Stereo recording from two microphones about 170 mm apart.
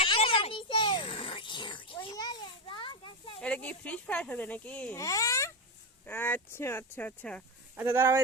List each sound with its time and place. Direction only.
0.0 s a child's voice: 30° left (ahead or behind)
3.4 s speech: 5° left (ahead or behind)
4.9 s a child's voice: 20° left (ahead or behind)
7.8 s speech: 15° right (ahead or behind)